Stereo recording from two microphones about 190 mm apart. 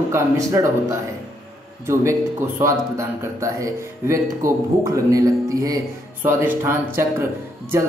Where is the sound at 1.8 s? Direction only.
15° right (ahead or behind).